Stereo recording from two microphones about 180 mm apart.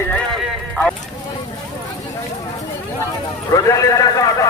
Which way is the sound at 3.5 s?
20° left (ahead or behind).